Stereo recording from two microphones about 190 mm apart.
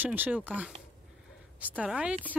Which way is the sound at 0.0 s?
10° right (ahead or behind).